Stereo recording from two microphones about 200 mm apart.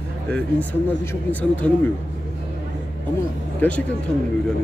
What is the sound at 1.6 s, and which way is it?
Speech, 5° left (ahead or behind).